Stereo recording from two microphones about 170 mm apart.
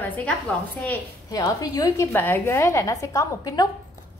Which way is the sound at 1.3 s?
20° left (ahead or behind).